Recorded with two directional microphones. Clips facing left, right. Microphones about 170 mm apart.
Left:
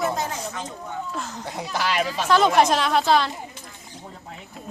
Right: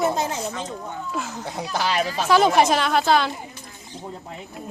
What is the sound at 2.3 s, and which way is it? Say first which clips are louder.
A woman's voice: right 1 dB; 10° right (ahead or behind).